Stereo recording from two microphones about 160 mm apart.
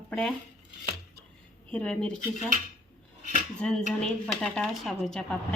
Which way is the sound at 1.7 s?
5° left (ahead or behind).